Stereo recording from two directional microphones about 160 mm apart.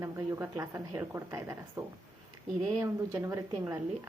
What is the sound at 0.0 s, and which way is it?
A woman's voice, 15° right (ahead or behind).